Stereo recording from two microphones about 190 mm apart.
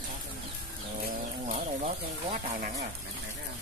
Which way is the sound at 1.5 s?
30° right (ahead or behind).